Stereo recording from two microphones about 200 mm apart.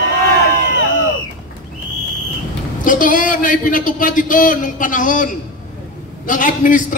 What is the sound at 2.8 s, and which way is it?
A man's voice, 40° left (ahead or behind).